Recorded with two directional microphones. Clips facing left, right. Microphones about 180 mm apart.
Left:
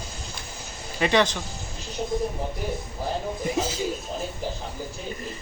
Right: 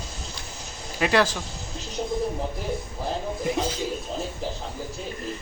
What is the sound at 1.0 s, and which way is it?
Speech, 5° right (ahead or behind).